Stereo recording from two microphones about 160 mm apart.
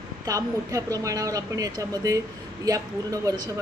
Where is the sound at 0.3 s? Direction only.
20° right (ahead or behind).